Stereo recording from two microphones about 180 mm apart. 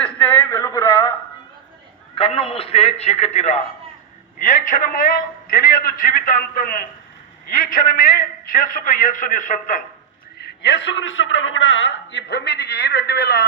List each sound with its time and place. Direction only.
0.0 s a sound: 10° left (ahead or behind)
2.1 s a man's voice: 30° left (ahead or behind)
10.6 s a man's voice: 90° left; by 13.4 s 60° left (ahead or behind)